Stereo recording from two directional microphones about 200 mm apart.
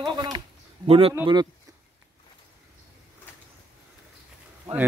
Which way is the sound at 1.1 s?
15° right (ahead or behind).